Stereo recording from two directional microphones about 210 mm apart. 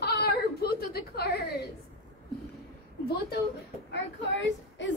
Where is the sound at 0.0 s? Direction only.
50° left (ahead or behind).